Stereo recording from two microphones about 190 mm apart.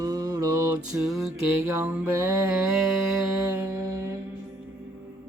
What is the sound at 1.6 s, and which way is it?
Speech, 15° right (ahead or behind).